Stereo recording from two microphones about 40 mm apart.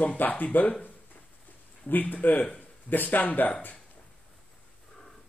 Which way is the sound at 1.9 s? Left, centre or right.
Left.